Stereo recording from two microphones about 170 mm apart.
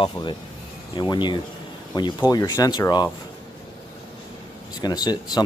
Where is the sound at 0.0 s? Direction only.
30° left (ahead or behind).